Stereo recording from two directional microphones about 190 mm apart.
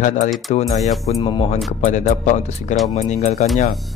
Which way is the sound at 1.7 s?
40° left (ahead or behind).